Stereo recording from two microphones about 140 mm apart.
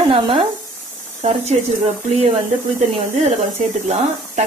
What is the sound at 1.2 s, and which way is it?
Speech, 50° right (ahead or behind).